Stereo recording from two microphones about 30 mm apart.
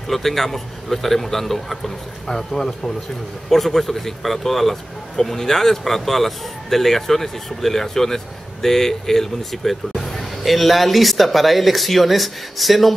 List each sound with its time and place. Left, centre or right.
0.1 s a man's voice: centre